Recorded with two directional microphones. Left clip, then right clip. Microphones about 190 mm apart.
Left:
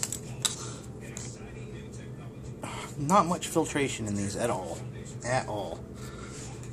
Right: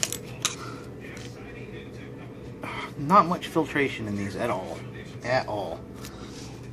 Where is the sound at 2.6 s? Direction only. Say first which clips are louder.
Right 3 dB; 5° left (ahead or behind).